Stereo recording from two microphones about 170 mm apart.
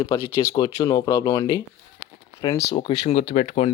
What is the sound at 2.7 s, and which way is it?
Speech, 30° left (ahead or behind).